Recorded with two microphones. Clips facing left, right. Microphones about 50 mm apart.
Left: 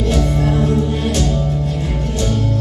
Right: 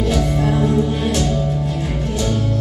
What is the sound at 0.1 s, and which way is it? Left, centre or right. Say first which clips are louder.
Music: left 3 dB; centre.